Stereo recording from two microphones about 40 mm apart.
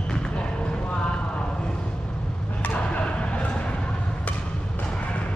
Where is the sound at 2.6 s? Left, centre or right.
Left.